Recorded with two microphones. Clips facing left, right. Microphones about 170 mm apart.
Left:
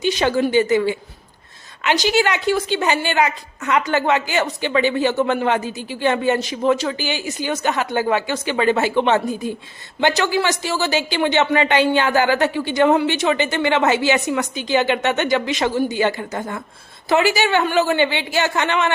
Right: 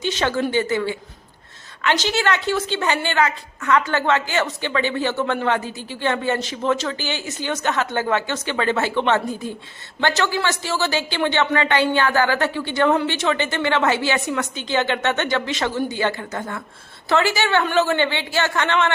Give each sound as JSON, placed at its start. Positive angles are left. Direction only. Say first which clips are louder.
{"t": 0.0, "sound": "speech", "louder": "left 4 dB", "side_deg": 10}